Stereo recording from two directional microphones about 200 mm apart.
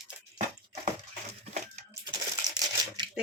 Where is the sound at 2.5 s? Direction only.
20° right (ahead or behind).